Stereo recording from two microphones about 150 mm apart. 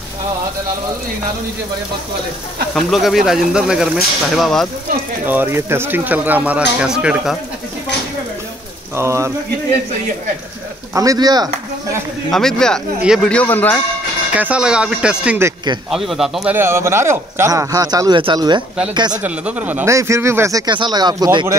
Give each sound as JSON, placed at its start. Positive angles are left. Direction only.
{"t": 2.7, "sound": "speech", "side_deg": 0}
{"t": 5.2, "sound": "speech", "side_deg": -15}
{"t": 8.9, "sound": "speech", "side_deg": -20}
{"t": 11.0, "sound": "speech", "side_deg": -25}
{"t": 12.3, "sound": "speech", "side_deg": 5}
{"t": 13.3, "sound": "a man's voice", "side_deg": 10}
{"t": 14.3, "sound": "speech", "side_deg": -10}
{"t": 16.5, "sound": "speech", "side_deg": -15}
{"t": 19.2, "sound": "speech", "side_deg": -10}